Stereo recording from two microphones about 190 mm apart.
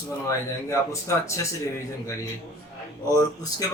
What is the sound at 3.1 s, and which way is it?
Speech, 15° left (ahead or behind).